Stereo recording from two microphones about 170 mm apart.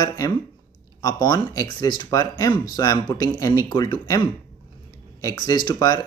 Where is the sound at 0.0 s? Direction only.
20° left (ahead or behind).